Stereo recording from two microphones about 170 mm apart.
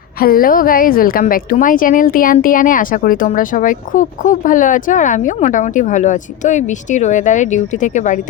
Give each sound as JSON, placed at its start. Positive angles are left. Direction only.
{"t": 0.2, "sound": "a woman's voice", "side_deg": 60}